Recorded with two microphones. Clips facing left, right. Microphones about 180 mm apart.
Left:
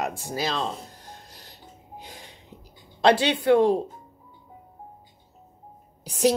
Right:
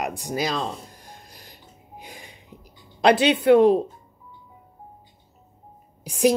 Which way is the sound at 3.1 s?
20° right (ahead or behind).